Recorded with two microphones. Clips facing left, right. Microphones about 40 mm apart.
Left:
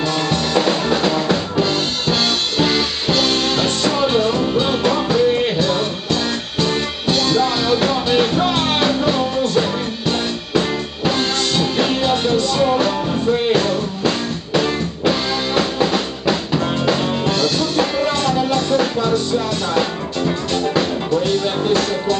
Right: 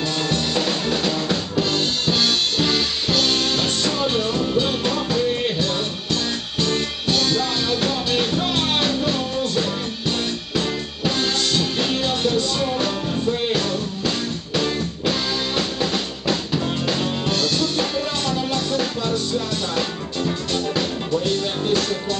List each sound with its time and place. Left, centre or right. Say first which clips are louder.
0.3 s drum kit: left 6 dB; centre
6.6 s music: left 3 dB; centre
12.6 s music: left 6 dB; centre